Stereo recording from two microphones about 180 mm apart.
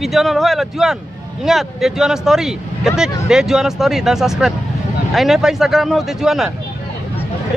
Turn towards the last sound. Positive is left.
turn(degrees=0)  # may be behind; listen again after turning